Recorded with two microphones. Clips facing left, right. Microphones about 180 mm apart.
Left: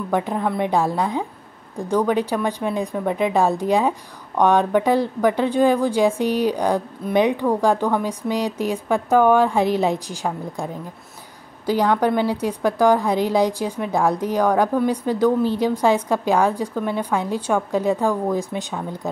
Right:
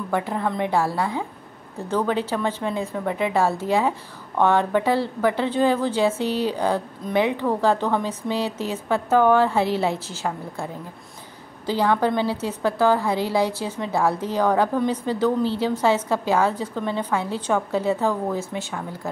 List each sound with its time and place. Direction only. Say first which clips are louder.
0.1 s a woman's voice: left 3 dB; 15° left (ahead or behind)